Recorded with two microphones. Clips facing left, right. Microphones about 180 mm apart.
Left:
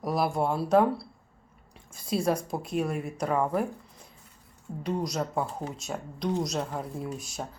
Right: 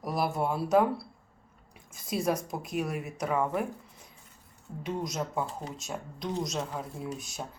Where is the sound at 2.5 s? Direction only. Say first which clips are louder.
Left 4 dB; 30° left (ahead or behind).